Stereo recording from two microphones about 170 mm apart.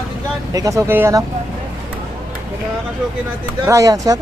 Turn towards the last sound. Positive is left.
turn(degrees=-20)  # may be behind; listen again after turning